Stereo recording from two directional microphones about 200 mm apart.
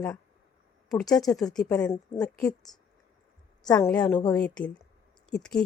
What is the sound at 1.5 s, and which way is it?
A woman's voice, 5° left (ahead or behind).